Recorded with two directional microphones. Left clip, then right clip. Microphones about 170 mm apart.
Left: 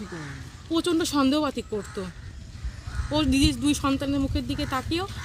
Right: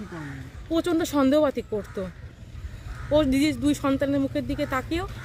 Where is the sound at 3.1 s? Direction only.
Centre (ahead or behind).